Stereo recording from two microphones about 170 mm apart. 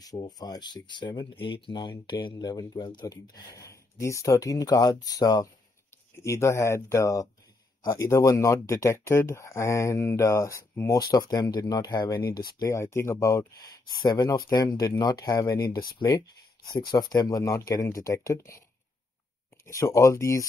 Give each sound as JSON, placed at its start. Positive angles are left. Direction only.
{"t": 0.0, "sound": "speech", "side_deg": 20}
{"t": 19.6, "sound": "speech", "side_deg": 20}